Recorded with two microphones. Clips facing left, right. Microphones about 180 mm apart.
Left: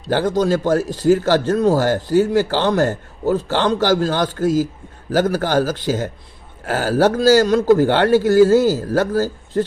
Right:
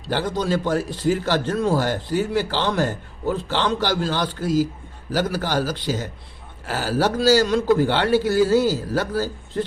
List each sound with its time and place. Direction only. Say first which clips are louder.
0.1 s a man's voice: left 6 dB; 45° left (ahead or behind)